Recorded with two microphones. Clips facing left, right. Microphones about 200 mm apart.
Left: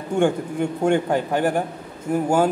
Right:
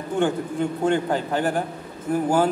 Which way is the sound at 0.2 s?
10° left (ahead or behind).